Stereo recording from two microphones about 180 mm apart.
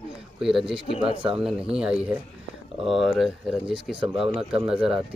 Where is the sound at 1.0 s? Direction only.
30° right (ahead or behind).